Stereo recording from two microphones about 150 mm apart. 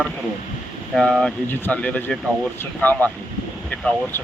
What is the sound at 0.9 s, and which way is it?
Speech, 5° left (ahead or behind).